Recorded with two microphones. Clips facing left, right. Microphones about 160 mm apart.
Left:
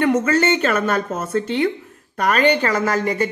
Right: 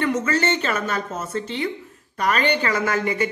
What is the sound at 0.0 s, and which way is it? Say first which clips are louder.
A woman's voice: left 5 dB; 50° left (ahead or behind).